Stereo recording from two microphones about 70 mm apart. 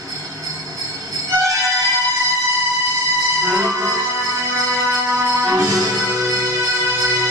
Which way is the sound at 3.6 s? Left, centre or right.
Right.